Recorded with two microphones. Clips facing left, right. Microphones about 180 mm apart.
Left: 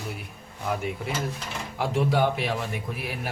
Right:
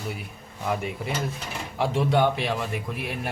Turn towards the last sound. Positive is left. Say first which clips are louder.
# right 2 dB
turn(degrees=5)  # may be behind; listen again after turning